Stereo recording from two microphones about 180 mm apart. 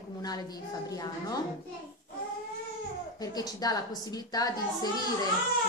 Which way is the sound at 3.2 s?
20° left (ahead or behind).